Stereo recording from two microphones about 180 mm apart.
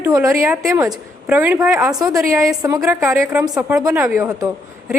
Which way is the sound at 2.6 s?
15° right (ahead or behind).